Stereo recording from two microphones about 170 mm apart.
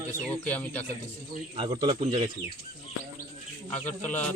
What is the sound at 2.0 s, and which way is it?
Speech, 40° right (ahead or behind).